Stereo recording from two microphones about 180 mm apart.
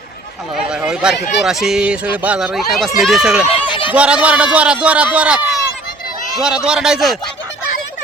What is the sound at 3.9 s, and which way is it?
A man's voice, 5° right (ahead or behind).